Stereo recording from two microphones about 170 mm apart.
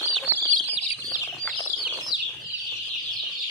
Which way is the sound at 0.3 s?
10° right (ahead or behind).